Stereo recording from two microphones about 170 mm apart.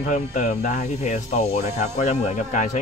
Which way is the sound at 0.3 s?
50° left (ahead or behind).